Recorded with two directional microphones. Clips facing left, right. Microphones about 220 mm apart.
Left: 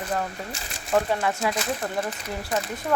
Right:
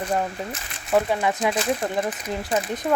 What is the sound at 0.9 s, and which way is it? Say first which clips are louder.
Speech: right 2 dB; 10° right (ahead or behind).